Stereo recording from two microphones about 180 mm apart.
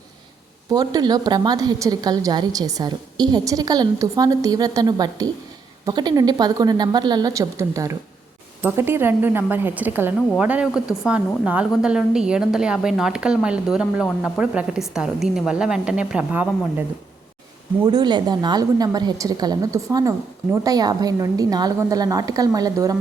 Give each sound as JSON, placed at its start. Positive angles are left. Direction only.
{"t": 0.7, "sound": "a woman's voice", "side_deg": -20}
{"t": 17.8, "sound": "a woman's voice", "side_deg": -25}